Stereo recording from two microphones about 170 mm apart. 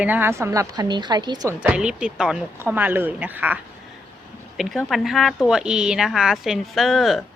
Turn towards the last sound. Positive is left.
turn(degrees=0)  # may be behind; listen again after turning